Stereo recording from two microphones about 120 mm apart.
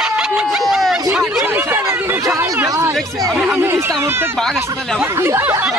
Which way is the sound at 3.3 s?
5° right (ahead or behind).